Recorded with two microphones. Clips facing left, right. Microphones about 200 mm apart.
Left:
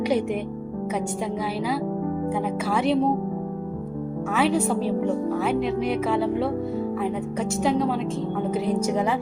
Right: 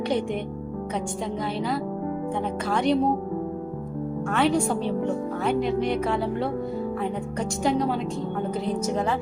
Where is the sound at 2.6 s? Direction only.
5° left (ahead or behind).